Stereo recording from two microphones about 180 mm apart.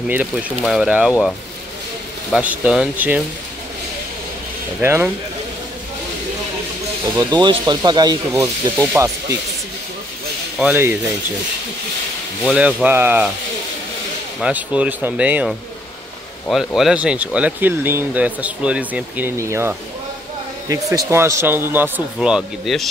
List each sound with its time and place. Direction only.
0.1 s speech: 5° right (ahead or behind)
2.3 s speech: 5° right (ahead or behind)
4.7 s speech: 10° right (ahead or behind)
7.2 s speech: 25° right (ahead or behind)
10.6 s speech: 10° right (ahead or behind)
12.4 s speech: 5° right (ahead or behind)
14.4 s speech: 5° right (ahead or behind)